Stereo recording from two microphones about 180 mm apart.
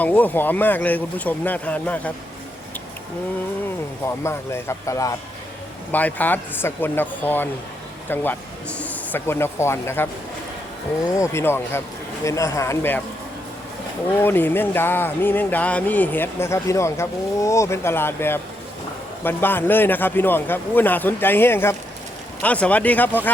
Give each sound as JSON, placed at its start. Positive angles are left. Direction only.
{"t": 0.0, "sound": "speech", "side_deg": 10}
{"t": 4.0, "sound": "speech", "side_deg": 15}
{"t": 11.2, "sound": "speech", "side_deg": 15}
{"t": 14.2, "sound": "speech", "side_deg": 10}